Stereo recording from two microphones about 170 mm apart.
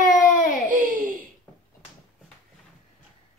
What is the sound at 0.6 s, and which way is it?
Giggle, 50° right (ahead or behind).